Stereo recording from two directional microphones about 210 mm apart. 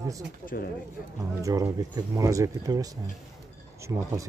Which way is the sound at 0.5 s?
45° left (ahead or behind).